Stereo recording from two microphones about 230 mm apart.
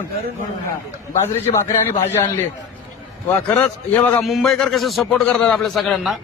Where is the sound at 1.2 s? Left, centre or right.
Centre.